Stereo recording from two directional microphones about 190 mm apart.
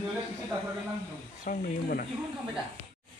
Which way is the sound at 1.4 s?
45° left (ahead or behind).